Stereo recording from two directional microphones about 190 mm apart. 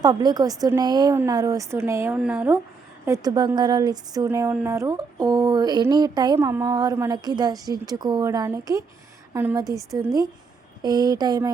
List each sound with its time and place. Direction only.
0.0 s a woman's voice: 20° right (ahead or behind)
3.1 s a woman's voice: 20° right (ahead or behind)
10.8 s speech: 20° right (ahead or behind)